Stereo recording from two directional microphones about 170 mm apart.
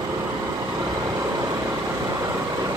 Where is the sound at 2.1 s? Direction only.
20° right (ahead or behind).